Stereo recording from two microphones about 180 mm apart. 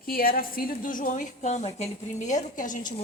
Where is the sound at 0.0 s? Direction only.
55° left (ahead or behind).